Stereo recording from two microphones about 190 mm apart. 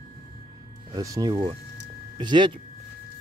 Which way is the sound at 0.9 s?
20° right (ahead or behind).